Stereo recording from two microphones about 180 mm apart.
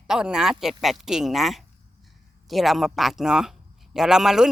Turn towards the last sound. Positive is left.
turn(degrees=-5)  # may be behind; listen again after turning